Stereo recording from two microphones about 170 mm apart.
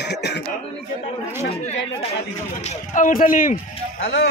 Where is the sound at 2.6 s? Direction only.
45° left (ahead or behind).